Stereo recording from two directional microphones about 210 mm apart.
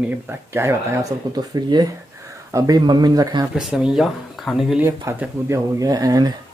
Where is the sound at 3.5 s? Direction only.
5° right (ahead or behind).